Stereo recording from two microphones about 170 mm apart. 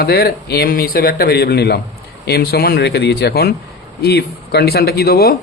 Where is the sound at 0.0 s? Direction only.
65° left (ahead or behind).